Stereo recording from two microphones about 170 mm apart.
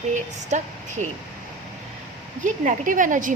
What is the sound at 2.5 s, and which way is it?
Speech, 50° right (ahead or behind).